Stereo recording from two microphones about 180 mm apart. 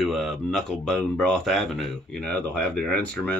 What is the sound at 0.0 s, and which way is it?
Speech, centre (ahead or behind).